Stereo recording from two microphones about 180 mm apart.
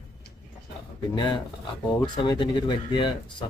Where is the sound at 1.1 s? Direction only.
25° left (ahead or behind).